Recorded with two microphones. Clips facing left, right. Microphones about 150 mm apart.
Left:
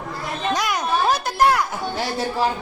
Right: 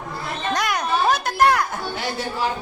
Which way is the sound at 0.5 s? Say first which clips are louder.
Even; centre (ahead or behind).